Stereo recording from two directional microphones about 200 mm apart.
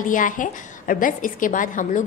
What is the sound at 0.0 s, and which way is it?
A woman's voice, 40° left (ahead or behind).